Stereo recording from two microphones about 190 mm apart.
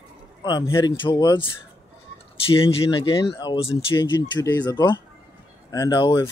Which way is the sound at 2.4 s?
30° left (ahead or behind).